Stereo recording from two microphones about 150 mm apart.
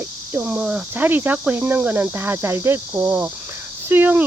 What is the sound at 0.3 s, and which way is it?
Speech, 5° right (ahead or behind).